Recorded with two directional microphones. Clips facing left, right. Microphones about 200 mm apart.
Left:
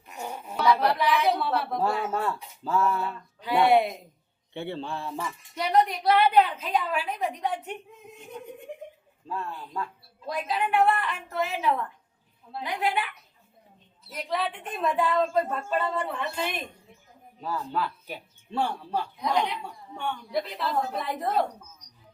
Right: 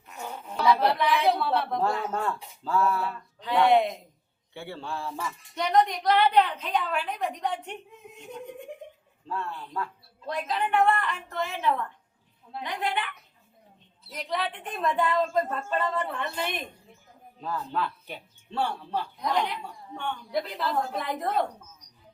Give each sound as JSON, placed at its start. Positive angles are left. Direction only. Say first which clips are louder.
{"t": 0.1, "sound": "a sound", "louder": "left 2 dB", "side_deg": 15}
{"t": 1.3, "sound": "a woman's voice", "louder": "right 1 dB", "side_deg": 0}
{"t": 4.5, "sound": "a man's voice", "louder": "left 3 dB", "side_deg": 20}
{"t": 5.5, "sound": "a woman's voice", "louder": "even", "side_deg": 5}
{"t": 9.2, "sound": "a woman's voice", "louder": "even", "side_deg": 15}
{"t": 12.6, "sound": "a woman's voice", "louder": "left 2 dB", "side_deg": 5}
{"t": 14.1, "sound": "a woman's voice", "louder": "left 1 dB", "side_deg": 0}